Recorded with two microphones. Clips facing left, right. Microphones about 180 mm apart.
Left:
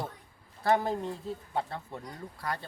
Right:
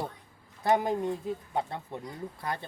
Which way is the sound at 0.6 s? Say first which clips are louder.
Right 1 dB; 15° right (ahead or behind).